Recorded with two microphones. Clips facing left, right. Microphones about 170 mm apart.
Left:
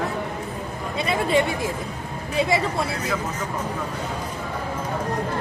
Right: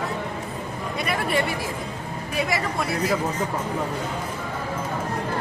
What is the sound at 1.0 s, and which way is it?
A woman's voice, 25° left (ahead or behind).